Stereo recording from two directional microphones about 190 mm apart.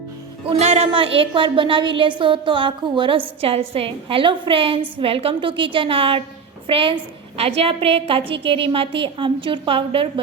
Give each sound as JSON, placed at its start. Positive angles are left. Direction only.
{"t": 0.4, "sound": "a woman's voice", "side_deg": -35}